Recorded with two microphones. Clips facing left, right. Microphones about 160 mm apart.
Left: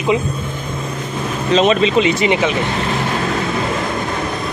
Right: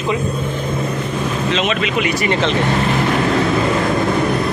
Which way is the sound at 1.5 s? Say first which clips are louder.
Left 9 dB; 35° left (ahead or behind).